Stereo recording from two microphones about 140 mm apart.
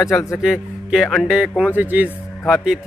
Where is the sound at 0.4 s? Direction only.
Centre (ahead or behind).